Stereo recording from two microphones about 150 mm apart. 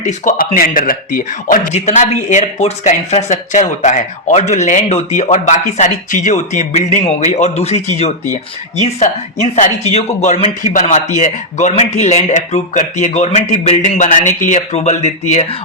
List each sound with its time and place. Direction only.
0.0 s speech: 60° left (ahead or behind)